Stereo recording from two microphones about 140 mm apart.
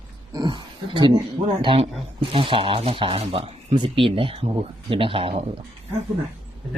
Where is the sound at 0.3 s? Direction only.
35° right (ahead or behind).